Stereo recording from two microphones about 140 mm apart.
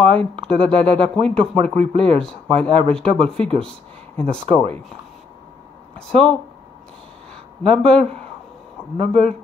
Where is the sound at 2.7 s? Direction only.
40° right (ahead or behind).